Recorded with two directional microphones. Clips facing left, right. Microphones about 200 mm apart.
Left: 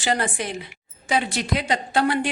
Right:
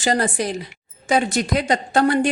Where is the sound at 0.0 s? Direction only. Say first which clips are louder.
Right 4 dB; 40° right (ahead or behind).